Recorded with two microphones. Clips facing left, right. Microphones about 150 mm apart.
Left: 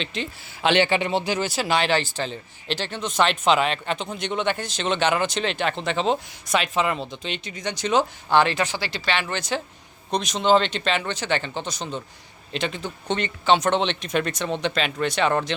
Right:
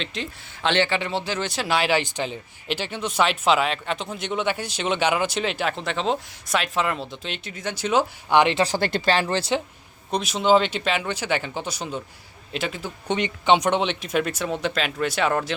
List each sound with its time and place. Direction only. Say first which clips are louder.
0.0 s speech: left 1 dB; centre (ahead or behind)
0.6 s speech: left 2 dB; 15° left (ahead or behind); by 8.5 s 15° right (ahead or behind)
8.5 s speech: right 5 dB; 35° right (ahead or behind)
10.1 s speech: even; 5° right (ahead or behind)